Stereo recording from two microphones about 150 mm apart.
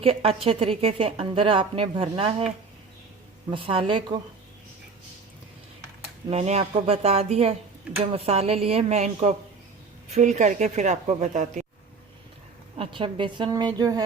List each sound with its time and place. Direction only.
0.0 s a woman's voice: 40° right (ahead or behind)
3.5 s a woman's voice: 35° right (ahead or behind)
6.2 s speech: 45° right (ahead or behind)
12.7 s a woman's voice: 35° right (ahead or behind)